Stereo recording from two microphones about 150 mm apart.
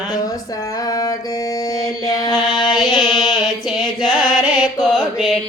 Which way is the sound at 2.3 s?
30° left (ahead or behind).